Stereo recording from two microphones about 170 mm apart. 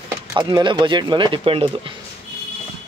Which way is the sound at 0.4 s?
25° right (ahead or behind).